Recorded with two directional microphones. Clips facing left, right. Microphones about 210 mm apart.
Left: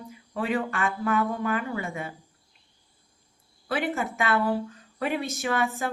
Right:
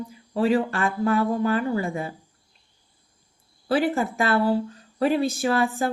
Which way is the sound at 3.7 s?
35° right (ahead or behind).